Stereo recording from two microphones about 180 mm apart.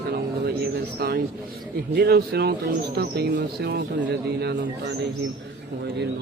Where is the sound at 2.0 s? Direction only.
65° right (ahead or behind).